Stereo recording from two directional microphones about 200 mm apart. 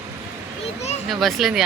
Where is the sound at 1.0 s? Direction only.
Centre (ahead or behind).